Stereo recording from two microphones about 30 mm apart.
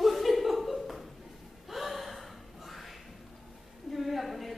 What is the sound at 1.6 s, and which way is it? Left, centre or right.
Gasp, centre.